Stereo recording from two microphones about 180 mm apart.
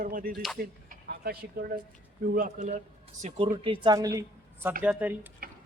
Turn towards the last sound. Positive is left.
turn(degrees=-10)  # may be behind; listen again after turning